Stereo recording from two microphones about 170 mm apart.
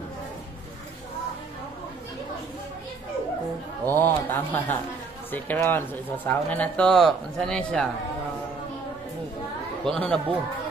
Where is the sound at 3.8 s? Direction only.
10° left (ahead or behind).